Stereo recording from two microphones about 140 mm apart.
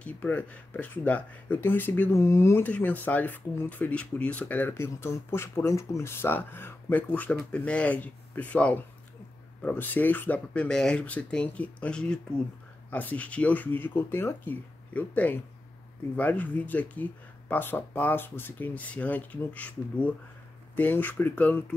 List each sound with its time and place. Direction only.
0.0 s speech: 10° left (ahead or behind)